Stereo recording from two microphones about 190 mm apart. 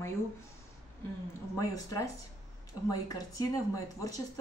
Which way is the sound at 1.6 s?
15° left (ahead or behind).